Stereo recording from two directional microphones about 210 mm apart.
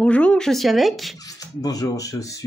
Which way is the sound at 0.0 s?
5° left (ahead or behind).